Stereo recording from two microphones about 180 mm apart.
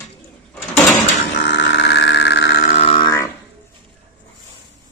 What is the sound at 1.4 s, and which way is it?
Grunt, 75° left (ahead or behind).